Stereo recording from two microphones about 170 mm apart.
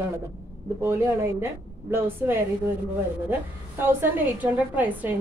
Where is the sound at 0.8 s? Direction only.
15° right (ahead or behind).